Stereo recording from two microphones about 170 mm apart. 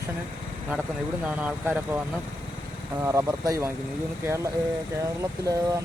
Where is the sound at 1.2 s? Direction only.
10° right (ahead or behind).